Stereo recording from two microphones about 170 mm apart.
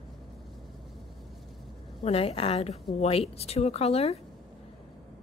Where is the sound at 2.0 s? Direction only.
35° left (ahead or behind).